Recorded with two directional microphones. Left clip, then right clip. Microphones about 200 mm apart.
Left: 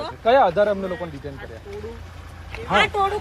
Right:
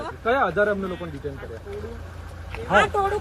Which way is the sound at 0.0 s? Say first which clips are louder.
Left 6 dB; 35° left (ahead or behind).